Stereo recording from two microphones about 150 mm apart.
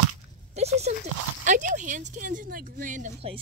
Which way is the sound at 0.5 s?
45° right (ahead or behind).